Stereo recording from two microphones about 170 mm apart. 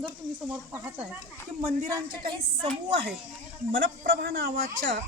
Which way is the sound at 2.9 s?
80° right.